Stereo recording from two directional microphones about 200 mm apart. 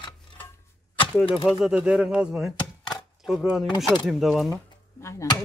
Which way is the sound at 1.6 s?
5° right (ahead or behind).